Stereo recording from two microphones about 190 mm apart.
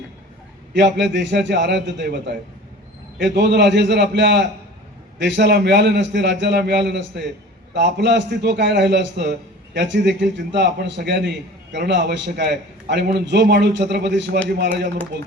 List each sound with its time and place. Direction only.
0.8 s a man's voice: 65° right (ahead or behind)
3.3 s a man's voice: 65° right (ahead or behind)